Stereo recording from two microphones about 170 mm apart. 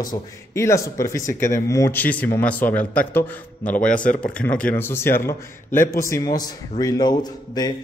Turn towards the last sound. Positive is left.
turn(degrees=25)  # may be behind; listen again after turning